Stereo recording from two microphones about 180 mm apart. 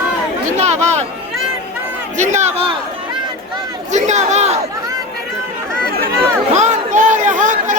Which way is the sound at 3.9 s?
40° right (ahead or behind).